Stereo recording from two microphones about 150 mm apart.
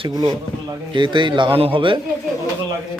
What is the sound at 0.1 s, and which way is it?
Speech, 20° right (ahead or behind).